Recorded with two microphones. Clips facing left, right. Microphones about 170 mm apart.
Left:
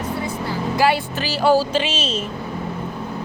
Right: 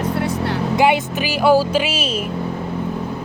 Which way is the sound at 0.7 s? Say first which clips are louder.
Right 2 dB; 20° right (ahead or behind).